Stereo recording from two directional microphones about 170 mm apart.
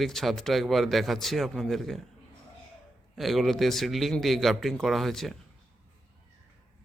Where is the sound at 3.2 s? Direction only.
Centre (ahead or behind).